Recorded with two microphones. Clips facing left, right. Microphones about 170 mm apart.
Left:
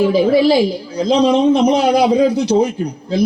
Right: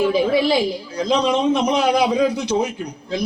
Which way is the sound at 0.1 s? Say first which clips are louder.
Left 5 dB; 35° left (ahead or behind).